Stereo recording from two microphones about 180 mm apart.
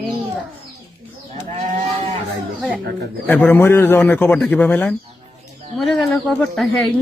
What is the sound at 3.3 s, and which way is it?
Speech, 10° left (ahead or behind).